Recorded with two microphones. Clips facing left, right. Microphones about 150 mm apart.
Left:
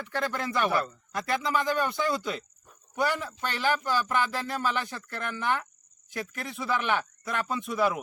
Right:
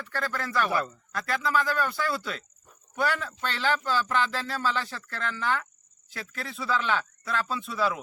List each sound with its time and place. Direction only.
0.0 s speech: 15° left (ahead or behind)